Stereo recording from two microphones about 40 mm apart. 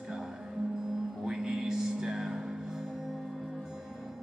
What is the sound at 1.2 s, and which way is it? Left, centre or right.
Music, centre.